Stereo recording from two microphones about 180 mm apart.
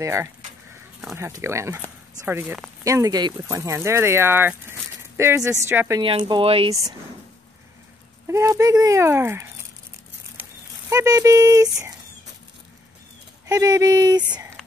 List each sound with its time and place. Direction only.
0.0 s a sound: 15° right (ahead or behind)
1.1 s speech: 15° right (ahead or behind); by 6.7 s 30° right (ahead or behind)
6.7 s speech: 20° right (ahead or behind)
8.3 s speech: 15° right (ahead or behind)
10.9 s speech: 20° right (ahead or behind)
13.5 s speech: 20° right (ahead or behind)